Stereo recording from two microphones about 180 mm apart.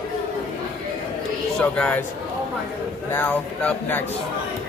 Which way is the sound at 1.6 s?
5° left (ahead or behind).